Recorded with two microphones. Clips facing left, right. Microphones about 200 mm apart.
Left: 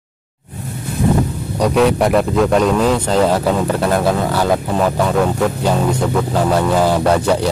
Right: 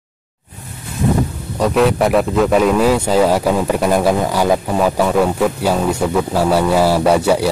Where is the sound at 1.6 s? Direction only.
Centre (ahead or behind).